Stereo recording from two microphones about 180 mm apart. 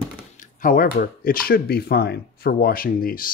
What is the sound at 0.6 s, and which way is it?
Speech, 50° left (ahead or behind).